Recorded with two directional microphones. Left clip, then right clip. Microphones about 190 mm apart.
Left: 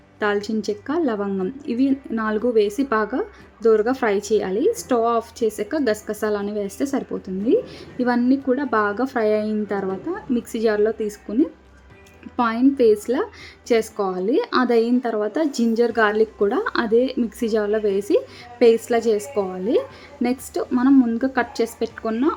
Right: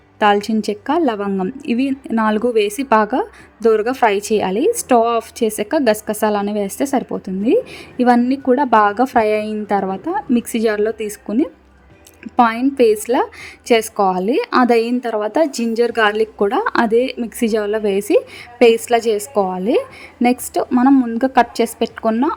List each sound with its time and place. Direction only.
0.2 s a woman's voice: 40° right (ahead or behind)